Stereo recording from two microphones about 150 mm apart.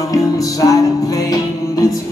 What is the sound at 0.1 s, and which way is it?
Music, 25° left (ahead or behind).